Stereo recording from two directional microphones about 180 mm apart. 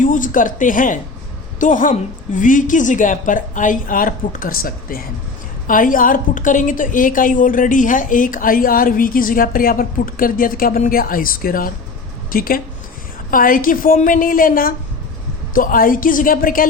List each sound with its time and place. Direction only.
0.0 s a woman's voice: 45° left (ahead or behind)